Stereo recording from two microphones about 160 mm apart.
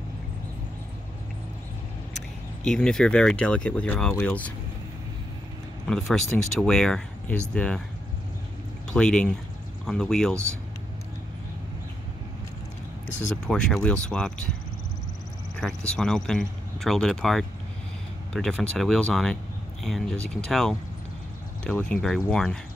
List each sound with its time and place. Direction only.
2.1 s speech: 5° left (ahead or behind)
5.9 s speech: 5° left (ahead or behind)
8.9 s speech: 5° left (ahead or behind)
10.3 s speech: 15° right (ahead or behind)
13.5 s speech: 5° left (ahead or behind)
15.9 s speech: 5° left (ahead or behind)